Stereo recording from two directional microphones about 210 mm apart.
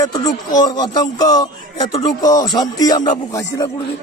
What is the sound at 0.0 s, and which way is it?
Speech, 15° left (ahead or behind).